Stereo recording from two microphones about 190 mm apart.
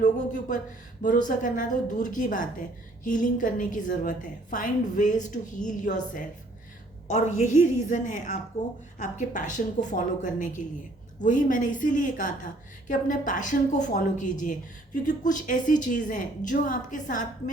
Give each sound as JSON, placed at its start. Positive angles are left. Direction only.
{"t": 0.0, "sound": "a woman's voice", "side_deg": 40}